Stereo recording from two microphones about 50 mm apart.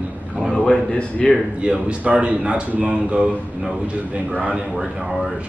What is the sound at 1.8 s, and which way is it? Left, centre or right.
Speech, right.